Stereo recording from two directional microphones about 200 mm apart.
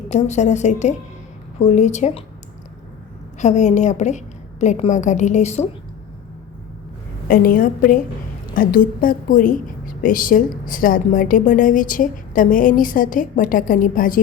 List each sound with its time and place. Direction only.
0.1 s a woman's voice: 35° left (ahead or behind)
3.3 s a woman's voice: 35° left (ahead or behind)
7.3 s a woman's voice: 45° left (ahead or behind)